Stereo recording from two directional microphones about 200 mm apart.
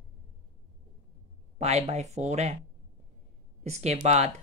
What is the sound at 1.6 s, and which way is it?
Speech, 35° right (ahead or behind).